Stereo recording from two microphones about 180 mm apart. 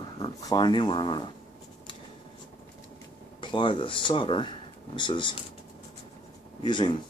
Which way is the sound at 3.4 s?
25° left (ahead or behind).